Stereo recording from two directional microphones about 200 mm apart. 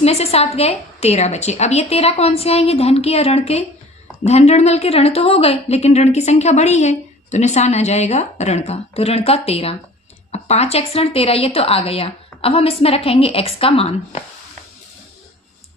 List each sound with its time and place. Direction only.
0.0 s a woman's voice: 30° left (ahead or behind)